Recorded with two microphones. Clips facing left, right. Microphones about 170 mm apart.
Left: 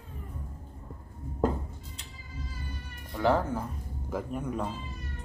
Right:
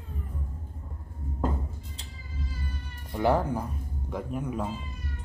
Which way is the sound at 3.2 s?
15° right (ahead or behind).